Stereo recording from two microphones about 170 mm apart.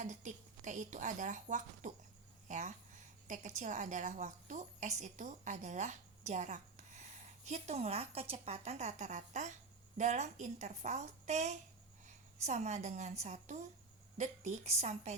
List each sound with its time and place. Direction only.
0.0 s a woman's voice: 45° right (ahead or behind)